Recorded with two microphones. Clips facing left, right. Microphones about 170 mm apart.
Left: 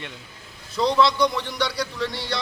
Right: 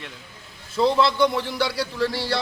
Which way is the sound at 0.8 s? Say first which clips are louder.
Right 1 dB; 5° right (ahead or behind).